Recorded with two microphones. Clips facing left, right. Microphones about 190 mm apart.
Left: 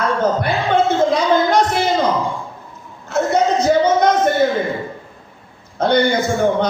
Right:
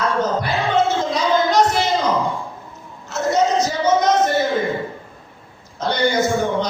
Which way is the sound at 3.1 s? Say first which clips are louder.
Left 2 dB; 55° left (ahead or behind).